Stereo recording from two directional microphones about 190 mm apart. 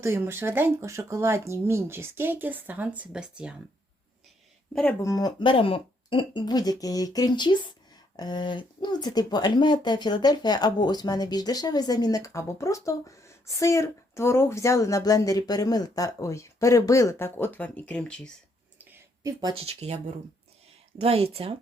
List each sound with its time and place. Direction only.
0.0 s speech: 10° right (ahead or behind)
4.7 s speech: 10° left (ahead or behind)
18.8 s a sound: 10° right (ahead or behind)
19.4 s speech: 25° right (ahead or behind)